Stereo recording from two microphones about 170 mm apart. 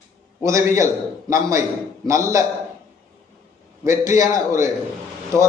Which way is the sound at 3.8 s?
15° right (ahead or behind).